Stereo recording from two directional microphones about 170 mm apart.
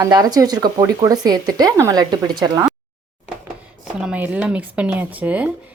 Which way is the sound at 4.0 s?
5° right (ahead or behind).